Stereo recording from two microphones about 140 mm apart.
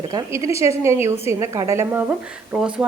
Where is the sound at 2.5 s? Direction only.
5° right (ahead or behind).